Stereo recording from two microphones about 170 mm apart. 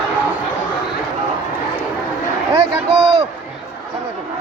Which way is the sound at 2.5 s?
35° right (ahead or behind).